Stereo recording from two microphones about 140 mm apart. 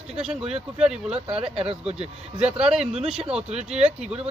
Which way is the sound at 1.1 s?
45° right (ahead or behind).